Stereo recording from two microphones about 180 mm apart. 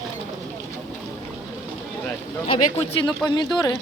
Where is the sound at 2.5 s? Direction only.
30° left (ahead or behind).